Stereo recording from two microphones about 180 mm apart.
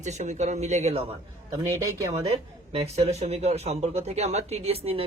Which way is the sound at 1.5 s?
15° right (ahead or behind).